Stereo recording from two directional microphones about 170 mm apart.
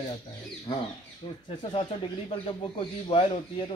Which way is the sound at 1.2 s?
30° left (ahead or behind).